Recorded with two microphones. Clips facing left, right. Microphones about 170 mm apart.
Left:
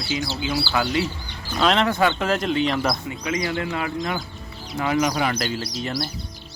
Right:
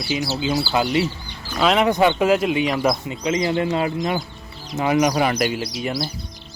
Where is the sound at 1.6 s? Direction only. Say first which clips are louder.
Right 2 dB; 5° right (ahead or behind).